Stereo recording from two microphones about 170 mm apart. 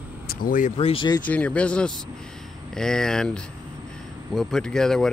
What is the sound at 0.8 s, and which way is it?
Speech, 30° left (ahead or behind).